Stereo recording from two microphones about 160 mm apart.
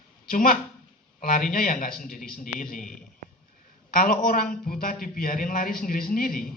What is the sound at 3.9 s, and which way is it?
A man's voice, 65° left (ahead or behind).